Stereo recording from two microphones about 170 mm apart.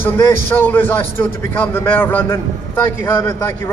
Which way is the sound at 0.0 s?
10° left (ahead or behind).